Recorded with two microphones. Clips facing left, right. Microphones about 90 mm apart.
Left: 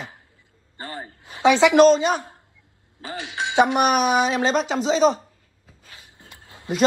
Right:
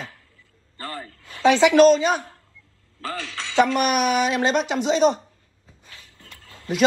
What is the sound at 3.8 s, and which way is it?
Speech, 35° left (ahead or behind).